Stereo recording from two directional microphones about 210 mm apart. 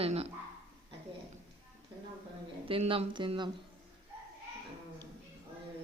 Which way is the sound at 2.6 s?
25° right (ahead or behind).